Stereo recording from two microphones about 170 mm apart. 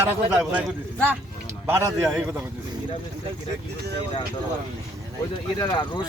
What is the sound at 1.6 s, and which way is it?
Speech, 15° right (ahead or behind).